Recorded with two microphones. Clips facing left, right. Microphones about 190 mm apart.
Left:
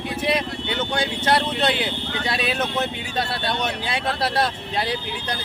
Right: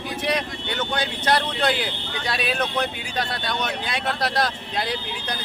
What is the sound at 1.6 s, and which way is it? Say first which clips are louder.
Speech: left 1 dB; 25° left (ahead or behind).